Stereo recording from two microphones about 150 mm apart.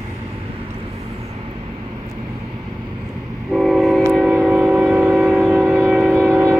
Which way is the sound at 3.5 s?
Centre (ahead or behind).